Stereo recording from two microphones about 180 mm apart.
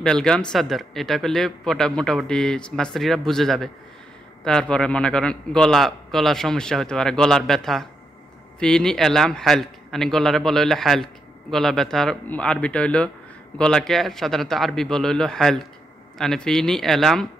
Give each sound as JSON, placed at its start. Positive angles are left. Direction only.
{"t": 0.0, "sound": "speech", "side_deg": 5}